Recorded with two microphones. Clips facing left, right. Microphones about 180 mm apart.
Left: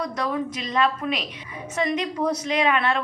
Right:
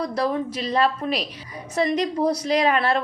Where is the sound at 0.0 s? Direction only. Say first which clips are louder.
Right 3 dB; 30° right (ahead or behind).